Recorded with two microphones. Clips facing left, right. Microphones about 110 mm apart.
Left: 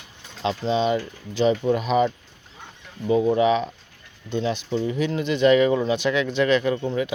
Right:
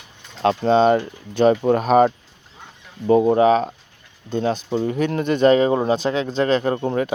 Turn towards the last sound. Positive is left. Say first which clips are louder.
# right 3 dB
turn(degrees=-45)  # may be behind; listen again after turning